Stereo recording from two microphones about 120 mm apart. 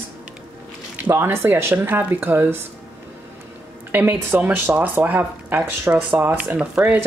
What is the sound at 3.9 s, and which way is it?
Speech, 15° right (ahead or behind).